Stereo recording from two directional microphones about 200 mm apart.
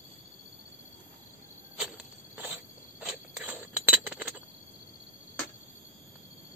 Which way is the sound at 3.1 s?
5° right (ahead or behind).